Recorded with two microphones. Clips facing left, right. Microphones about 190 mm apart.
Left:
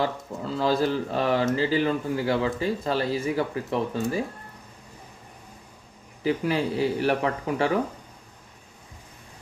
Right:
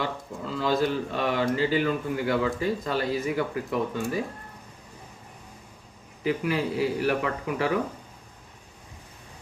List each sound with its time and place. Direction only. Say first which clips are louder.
0.5 s speech: left 1 dB; 35° left (ahead or behind)
6.2 s speech: left 2 dB; 30° left (ahead or behind)